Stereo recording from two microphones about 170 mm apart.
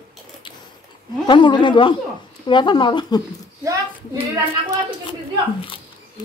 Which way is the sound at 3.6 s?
20° right (ahead or behind).